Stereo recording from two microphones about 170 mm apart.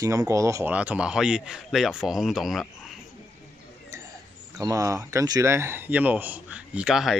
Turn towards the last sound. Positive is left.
turn(degrees=0)  # may be behind; listen again after turning